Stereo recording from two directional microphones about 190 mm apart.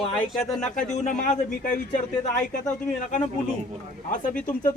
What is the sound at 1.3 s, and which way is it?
Speech, 40° left (ahead or behind).